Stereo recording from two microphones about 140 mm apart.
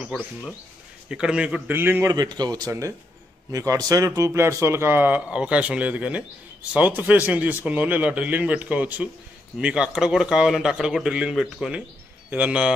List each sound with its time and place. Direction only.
0.1 s speech: 5° left (ahead or behind)
1.0 s speech: 5° right (ahead or behind)
2.1 s a man's voice: 30° right (ahead or behind); by 12.7 s 10° right (ahead or behind)